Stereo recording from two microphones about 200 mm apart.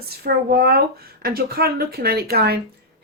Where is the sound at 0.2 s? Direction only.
50° right (ahead or behind).